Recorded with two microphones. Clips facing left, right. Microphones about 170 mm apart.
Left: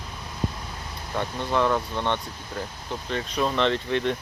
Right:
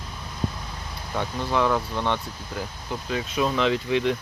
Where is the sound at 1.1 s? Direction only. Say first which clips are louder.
Even; centre (ahead or behind).